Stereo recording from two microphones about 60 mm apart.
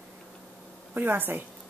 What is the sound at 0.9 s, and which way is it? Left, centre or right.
Speech, right.